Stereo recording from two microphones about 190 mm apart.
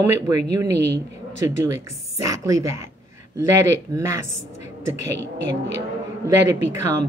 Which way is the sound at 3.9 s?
15° right (ahead or behind).